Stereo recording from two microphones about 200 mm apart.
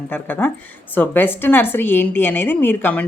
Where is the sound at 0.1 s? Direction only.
10° left (ahead or behind).